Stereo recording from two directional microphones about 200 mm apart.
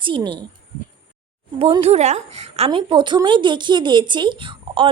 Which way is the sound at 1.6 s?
30° right (ahead or behind).